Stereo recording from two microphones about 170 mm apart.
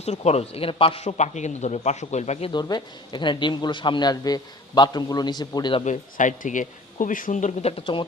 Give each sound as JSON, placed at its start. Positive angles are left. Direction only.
{"t": 0.0, "sound": "a man's voice", "side_deg": 40}
{"t": 2.5, "sound": "speech", "side_deg": 25}
{"t": 5.8, "sound": "speech", "side_deg": 45}